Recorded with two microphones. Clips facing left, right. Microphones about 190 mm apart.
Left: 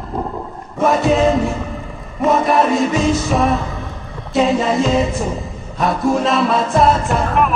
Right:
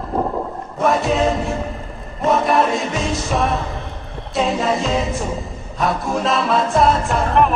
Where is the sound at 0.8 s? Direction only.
Centre (ahead or behind).